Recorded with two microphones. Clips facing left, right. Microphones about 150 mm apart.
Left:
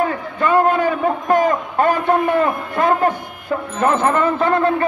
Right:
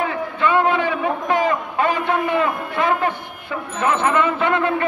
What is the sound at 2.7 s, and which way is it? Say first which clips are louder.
Speech: left 3 dB; 45° left (ahead or behind).